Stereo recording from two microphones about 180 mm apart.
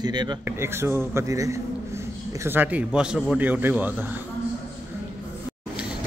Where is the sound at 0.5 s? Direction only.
15° right (ahead or behind).